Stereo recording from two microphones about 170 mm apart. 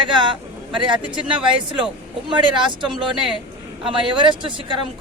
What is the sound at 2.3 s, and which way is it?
Speech, 30° right (ahead or behind).